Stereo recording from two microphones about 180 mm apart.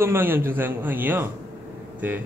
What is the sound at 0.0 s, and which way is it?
A man's voice, 10° right (ahead or behind).